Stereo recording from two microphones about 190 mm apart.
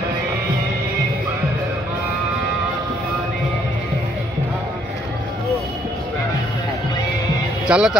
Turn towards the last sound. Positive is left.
turn(degrees=-5)  # may be behind; listen again after turning